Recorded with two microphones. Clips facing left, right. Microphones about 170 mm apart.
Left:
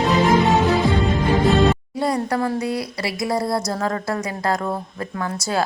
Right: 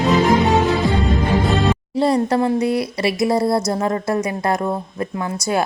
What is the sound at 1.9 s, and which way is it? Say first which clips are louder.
A woman's voice: right 5 dB; 30° right (ahead or behind).